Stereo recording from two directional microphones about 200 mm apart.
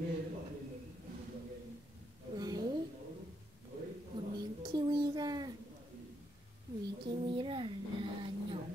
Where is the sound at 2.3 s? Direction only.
20° right (ahead or behind).